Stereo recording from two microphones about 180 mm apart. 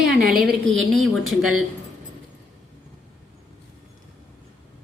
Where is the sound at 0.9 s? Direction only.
Centre (ahead or behind).